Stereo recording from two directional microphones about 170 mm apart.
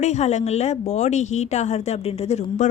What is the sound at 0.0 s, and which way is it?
A woman's voice, 40° left (ahead or behind).